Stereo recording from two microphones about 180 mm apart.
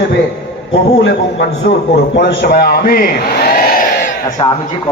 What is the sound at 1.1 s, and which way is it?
A man's voice, 65° left (ahead or behind).